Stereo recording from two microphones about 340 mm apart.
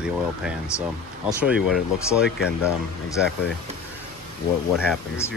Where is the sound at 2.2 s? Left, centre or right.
Left.